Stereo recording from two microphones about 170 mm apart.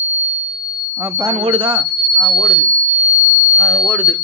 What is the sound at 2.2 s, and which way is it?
Speech, 20° right (ahead or behind).